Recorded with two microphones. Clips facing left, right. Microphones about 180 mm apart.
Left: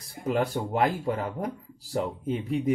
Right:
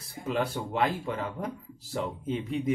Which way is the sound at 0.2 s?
40° left (ahead or behind).